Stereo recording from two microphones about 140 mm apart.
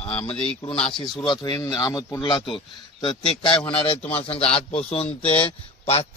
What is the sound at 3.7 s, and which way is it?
A man's voice, 40° left (ahead or behind).